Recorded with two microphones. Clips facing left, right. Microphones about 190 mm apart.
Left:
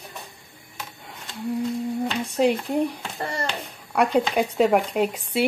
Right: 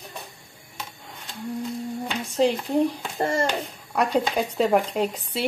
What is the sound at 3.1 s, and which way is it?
Speech, 25° right (ahead or behind).